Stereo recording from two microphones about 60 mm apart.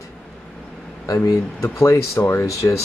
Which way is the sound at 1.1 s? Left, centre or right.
Left.